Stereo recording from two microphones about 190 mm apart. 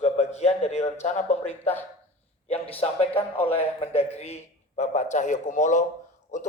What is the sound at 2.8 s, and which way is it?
Speech, 30° left (ahead or behind).